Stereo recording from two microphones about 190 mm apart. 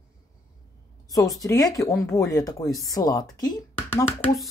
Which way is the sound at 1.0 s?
15° left (ahead or behind).